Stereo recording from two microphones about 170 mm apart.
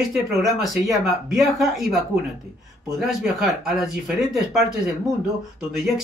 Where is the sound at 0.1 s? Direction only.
Centre (ahead or behind).